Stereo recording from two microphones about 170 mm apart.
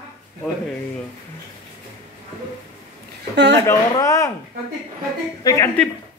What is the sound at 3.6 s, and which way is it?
Speech, 15° left (ahead or behind).